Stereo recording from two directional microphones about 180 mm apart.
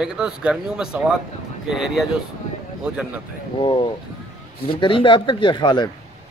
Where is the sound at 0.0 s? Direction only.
5° right (ahead or behind).